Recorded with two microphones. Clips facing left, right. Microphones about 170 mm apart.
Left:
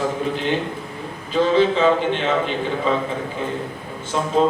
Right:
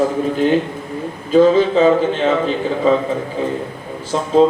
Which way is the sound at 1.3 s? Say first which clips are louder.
Right 6 dB; 40° right (ahead or behind).